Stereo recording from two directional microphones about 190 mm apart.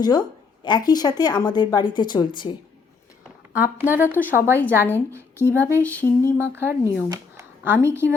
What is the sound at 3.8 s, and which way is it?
Speech, 10° right (ahead or behind).